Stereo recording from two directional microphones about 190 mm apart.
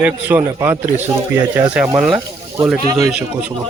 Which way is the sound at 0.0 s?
10° right (ahead or behind).